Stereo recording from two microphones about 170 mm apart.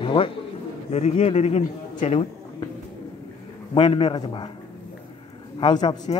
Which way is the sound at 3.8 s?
30° left (ahead or behind).